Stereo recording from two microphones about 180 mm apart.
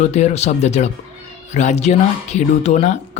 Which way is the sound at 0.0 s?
40° left (ahead or behind).